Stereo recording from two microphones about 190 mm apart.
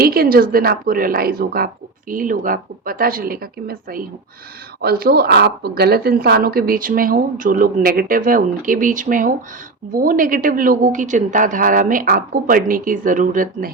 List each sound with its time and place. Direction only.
0.0 s speech: 50° right (ahead or behind)